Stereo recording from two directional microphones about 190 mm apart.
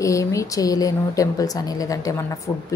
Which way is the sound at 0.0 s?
15° left (ahead or behind).